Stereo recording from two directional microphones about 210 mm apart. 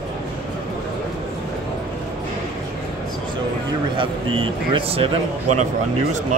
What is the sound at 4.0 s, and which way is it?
A man's voice, 25° right (ahead or behind).